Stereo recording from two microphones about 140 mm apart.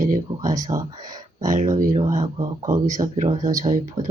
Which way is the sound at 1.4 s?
60° right (ahead or behind).